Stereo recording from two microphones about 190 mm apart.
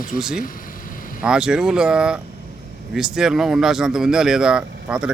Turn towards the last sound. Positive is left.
turn(degrees=-5)  # may be behind; listen again after turning